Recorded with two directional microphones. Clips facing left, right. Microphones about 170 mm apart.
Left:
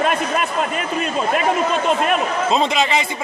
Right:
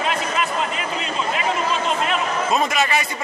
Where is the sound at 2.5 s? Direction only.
20° left (ahead or behind).